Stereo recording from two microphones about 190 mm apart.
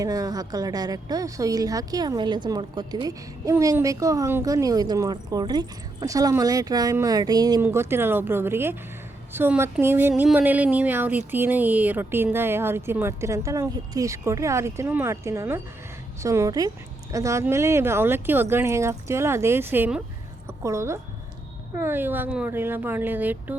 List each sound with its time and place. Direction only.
0.0 s a woman's voice: 20° right (ahead or behind)